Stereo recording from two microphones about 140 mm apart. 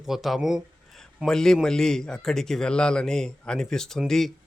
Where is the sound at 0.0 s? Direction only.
Centre (ahead or behind).